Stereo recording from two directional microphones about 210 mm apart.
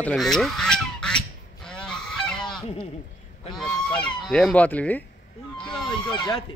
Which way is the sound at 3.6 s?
5° left (ahead or behind).